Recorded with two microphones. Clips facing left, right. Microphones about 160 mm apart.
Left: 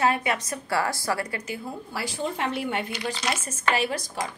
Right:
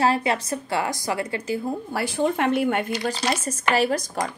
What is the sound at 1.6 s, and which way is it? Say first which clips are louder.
A woman's voice: right 6 dB; 55° right (ahead or behind).